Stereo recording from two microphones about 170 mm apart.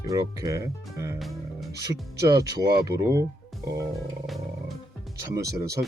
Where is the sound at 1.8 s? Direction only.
20° right (ahead or behind).